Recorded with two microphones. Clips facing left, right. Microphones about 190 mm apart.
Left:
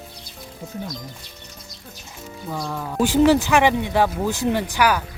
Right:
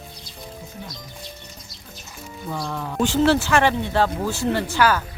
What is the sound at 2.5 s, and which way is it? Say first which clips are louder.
Speech: left 1 dB; 5° left (ahead or behind).